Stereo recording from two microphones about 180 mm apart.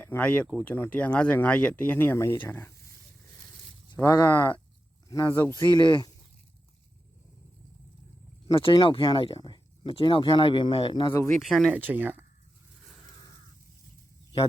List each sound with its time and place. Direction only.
0.0 s speech: 10° left (ahead or behind)
3.9 s speech: 20° left (ahead or behind)
8.4 s speech: 30° left (ahead or behind)
11.4 s speech: centre (ahead or behind)